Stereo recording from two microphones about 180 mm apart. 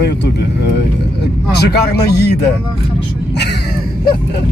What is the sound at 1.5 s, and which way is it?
Speech, 65° left (ahead or behind).